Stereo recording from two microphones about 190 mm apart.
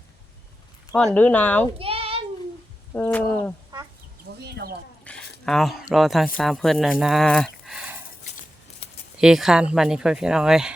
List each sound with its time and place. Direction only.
0.9 s speech: 10° left (ahead or behind)
1.8 s a sound: 30° right (ahead or behind)
2.9 s speech: 10° left (ahead or behind)
4.4 s speech: 60° right (ahead or behind)
5.0 s speech: 5° left (ahead or behind)
9.1 s speech: 5° right (ahead or behind)